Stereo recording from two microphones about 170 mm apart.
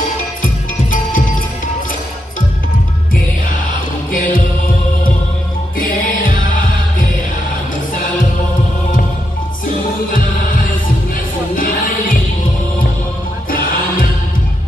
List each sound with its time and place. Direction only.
0.4 s music: 55° left (ahead or behind)
4.1 s music: 55° left (ahead or behind)
11.5 s music: 55° left (ahead or behind)